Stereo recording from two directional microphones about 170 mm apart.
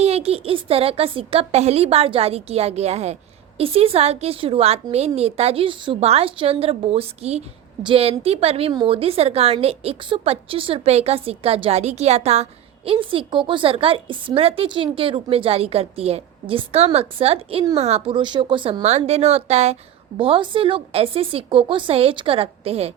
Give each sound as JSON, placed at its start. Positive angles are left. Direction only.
{"t": 0.0, "sound": "a woman's voice", "side_deg": -35}